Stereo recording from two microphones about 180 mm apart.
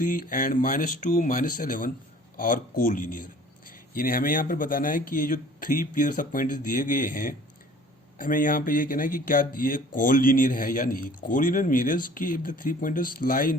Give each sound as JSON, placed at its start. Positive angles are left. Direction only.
{"t": 0.0, "sound": "speech", "side_deg": 50}